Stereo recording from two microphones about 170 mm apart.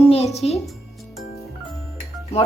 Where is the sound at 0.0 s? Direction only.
35° left (ahead or behind).